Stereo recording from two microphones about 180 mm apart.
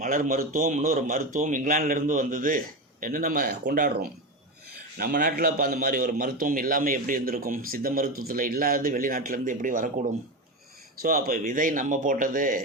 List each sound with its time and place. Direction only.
0.0 s a man's voice: 50° right (ahead or behind)
11.0 s a man's voice: 55° right (ahead or behind)